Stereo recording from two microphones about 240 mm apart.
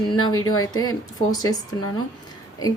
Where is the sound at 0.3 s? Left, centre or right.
Left.